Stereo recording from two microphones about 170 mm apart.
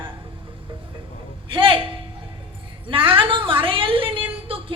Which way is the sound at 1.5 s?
30° right (ahead or behind).